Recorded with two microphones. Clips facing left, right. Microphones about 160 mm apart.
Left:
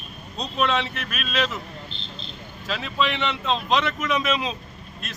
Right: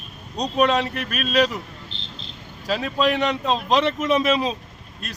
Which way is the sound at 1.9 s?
90° right.